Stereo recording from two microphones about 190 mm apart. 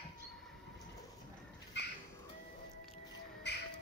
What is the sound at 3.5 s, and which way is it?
Music, 60° left (ahead or behind).